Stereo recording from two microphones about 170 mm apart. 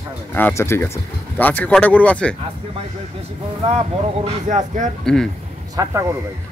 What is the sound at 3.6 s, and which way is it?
Speech, 35° right (ahead or behind).